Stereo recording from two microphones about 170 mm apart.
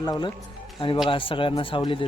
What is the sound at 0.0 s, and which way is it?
Speech, 25° left (ahead or behind).